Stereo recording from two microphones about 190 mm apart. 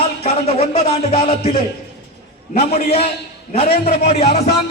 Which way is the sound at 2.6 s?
30° left (ahead or behind).